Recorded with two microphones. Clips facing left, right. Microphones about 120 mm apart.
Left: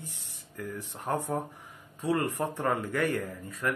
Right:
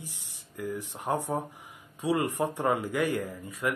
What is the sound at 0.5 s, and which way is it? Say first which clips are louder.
Speech: right 3 dB; 15° right (ahead or behind).